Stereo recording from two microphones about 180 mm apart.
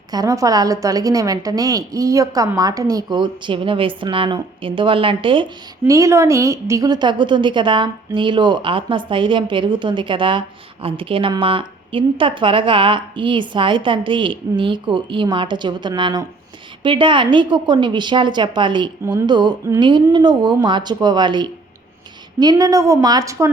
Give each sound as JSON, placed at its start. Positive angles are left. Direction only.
{"t": 0.1, "sound": "a woman's voice", "side_deg": -20}
{"t": 5.8, "sound": "a woman's voice", "side_deg": -15}